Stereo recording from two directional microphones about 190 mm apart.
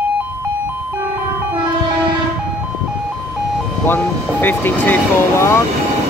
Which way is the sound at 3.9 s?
10° left (ahead or behind).